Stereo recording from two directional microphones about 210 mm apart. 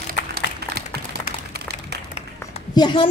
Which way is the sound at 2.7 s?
20° left (ahead or behind).